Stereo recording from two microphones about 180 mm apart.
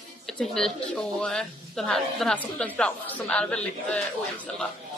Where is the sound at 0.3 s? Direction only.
Centre (ahead or behind).